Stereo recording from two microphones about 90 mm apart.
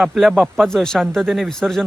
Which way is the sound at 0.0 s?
5° right (ahead or behind).